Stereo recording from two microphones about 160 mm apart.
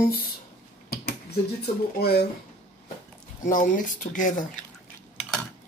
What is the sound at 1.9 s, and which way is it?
Speech, 70° left (ahead or behind).